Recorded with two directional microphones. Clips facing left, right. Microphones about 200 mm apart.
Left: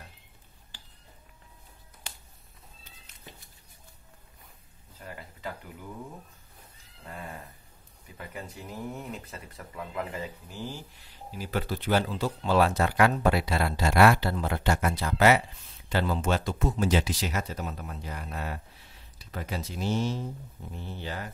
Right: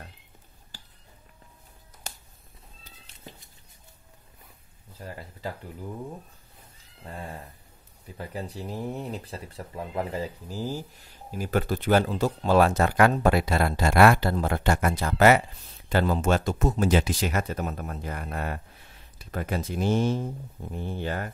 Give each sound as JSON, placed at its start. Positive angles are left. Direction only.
{"t": 2.1, "sound": "finger snapping", "side_deg": -45}
{"t": 5.0, "sound": "a sound", "side_deg": -35}
{"t": 8.2, "sound": "speech", "side_deg": -35}